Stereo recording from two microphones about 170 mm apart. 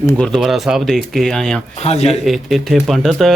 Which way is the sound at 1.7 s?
40° left (ahead or behind).